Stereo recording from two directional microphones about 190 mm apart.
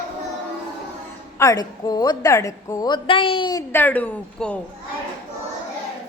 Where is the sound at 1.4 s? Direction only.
15° left (ahead or behind).